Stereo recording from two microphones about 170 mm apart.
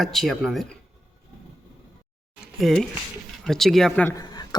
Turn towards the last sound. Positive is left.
turn(degrees=25)  # may be behind; listen again after turning